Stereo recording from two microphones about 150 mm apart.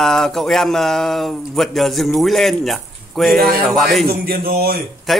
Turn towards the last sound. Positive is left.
turn(degrees=0)  # may be behind; listen again after turning